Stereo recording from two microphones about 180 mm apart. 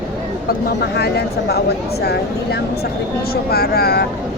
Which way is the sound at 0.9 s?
65° left (ahead or behind).